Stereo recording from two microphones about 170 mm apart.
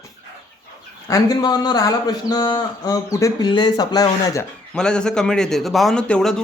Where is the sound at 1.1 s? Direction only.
25° left (ahead or behind).